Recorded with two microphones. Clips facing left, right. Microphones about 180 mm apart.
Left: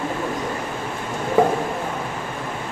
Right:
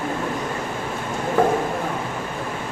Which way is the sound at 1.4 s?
15° left (ahead or behind).